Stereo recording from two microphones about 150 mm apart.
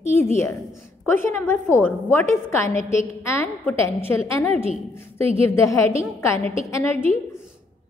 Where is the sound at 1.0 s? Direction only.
15° left (ahead or behind).